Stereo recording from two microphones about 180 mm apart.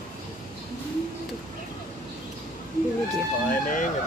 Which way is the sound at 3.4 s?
45° left (ahead or behind).